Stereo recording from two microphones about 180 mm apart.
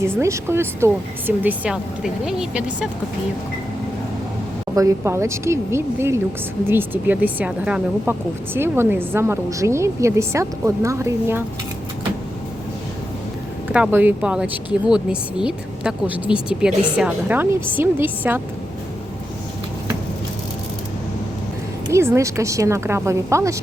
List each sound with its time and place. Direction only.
0.2 s a woman's voice: 15° right (ahead or behind)
4.7 s speech: 20° right (ahead or behind)
13.7 s speech: 10° right (ahead or behind)
21.9 s speech: 15° right (ahead or behind)